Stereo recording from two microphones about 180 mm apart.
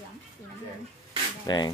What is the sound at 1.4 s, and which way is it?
Speech, 25° left (ahead or behind).